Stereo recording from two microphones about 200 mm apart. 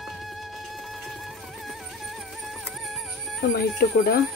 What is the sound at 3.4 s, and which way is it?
Speech, 50° left (ahead or behind).